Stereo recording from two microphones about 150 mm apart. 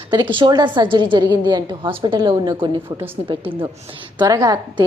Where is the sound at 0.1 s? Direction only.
30° right (ahead or behind).